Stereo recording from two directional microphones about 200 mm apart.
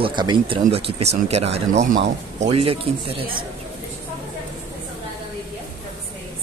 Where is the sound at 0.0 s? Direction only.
20° right (ahead or behind).